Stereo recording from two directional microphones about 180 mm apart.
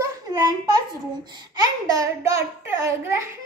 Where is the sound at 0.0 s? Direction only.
20° right (ahead or behind).